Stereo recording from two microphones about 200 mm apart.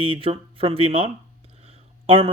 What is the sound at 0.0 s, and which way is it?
A man's voice, 25° right (ahead or behind).